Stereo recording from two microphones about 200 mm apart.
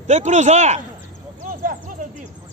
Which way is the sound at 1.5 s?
45° right (ahead or behind).